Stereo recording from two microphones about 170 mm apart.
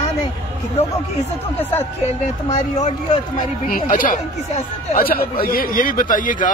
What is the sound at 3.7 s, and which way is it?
Speech, 55° left (ahead or behind).